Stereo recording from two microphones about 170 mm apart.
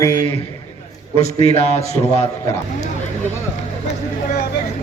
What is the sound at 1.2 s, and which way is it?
A man's voice, 40° left (ahead or behind).